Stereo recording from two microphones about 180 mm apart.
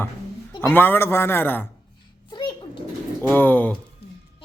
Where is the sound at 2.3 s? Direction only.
25° left (ahead or behind).